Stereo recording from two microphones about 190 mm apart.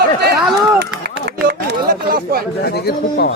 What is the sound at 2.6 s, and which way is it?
Speech, 55° left (ahead or behind).